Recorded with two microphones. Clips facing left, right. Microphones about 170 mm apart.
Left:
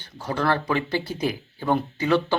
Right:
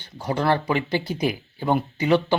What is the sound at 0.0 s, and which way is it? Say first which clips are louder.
Speech: right 2 dB; 15° right (ahead or behind).